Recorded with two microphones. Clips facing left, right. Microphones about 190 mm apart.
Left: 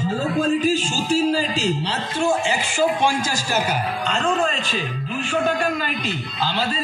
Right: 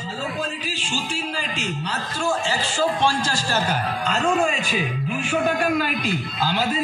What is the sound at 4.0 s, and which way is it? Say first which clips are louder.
A man's voice: right 1 dB; 5° right (ahead or behind).